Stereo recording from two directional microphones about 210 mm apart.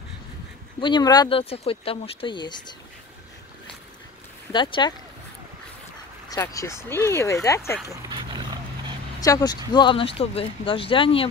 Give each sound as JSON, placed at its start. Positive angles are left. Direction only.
{"t": 0.7, "sound": "speech", "side_deg": 20}
{"t": 4.5, "sound": "speech", "side_deg": 20}
{"t": 6.2, "sound": "speech", "side_deg": 15}
{"t": 7.9, "sound": "dog", "side_deg": -20}
{"t": 9.2, "sound": "speech", "side_deg": 20}